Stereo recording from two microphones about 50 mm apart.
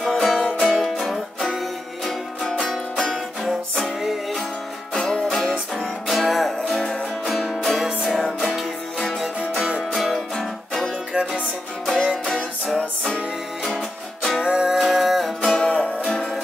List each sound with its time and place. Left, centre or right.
0.0 s music: centre
2.6 s music: centre
9.8 s music: centre
14.4 s music: centre
14.8 s music: centre
15.6 s music: left